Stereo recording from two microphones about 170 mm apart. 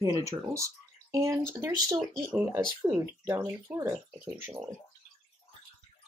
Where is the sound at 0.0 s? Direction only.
20° right (ahead or behind).